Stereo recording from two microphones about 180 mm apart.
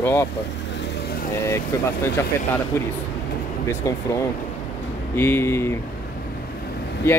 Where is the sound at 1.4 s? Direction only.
15° left (ahead or behind).